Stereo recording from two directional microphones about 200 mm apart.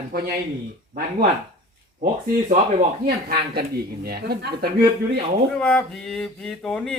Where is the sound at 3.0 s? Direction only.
50° right (ahead or behind).